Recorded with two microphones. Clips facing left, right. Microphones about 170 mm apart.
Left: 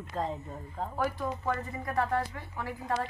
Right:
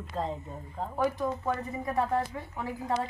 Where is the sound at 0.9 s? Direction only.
15° right (ahead or behind).